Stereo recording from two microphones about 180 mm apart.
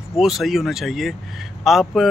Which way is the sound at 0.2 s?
Centre (ahead or behind).